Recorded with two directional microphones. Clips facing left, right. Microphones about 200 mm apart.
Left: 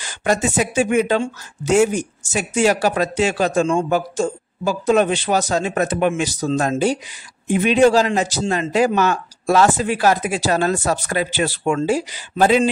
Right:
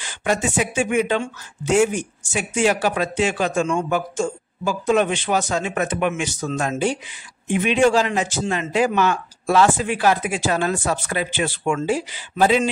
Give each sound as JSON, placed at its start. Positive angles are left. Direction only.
{"t": 0.0, "sound": "speech", "side_deg": 40}